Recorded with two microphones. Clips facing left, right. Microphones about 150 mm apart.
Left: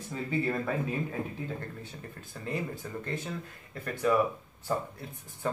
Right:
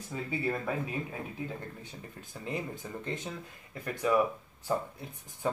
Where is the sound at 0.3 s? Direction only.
10° right (ahead or behind).